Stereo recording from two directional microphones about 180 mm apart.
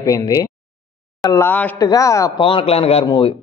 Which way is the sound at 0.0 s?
20° left (ahead or behind).